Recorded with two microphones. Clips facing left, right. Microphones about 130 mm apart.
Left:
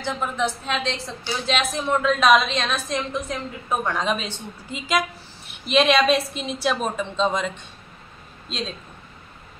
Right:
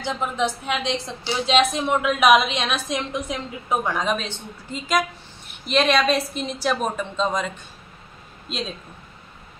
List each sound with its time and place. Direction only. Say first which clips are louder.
0.0 s a woman's voice: right 1 dB; 15° right (ahead or behind)
1.9 s a woman's voice: left 2 dB; 15° right (ahead or behind)